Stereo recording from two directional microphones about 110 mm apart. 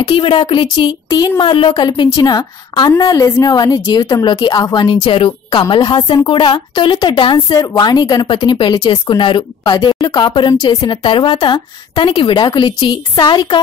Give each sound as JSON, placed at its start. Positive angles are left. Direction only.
{"t": 0.0, "sound": "speech", "side_deg": 50}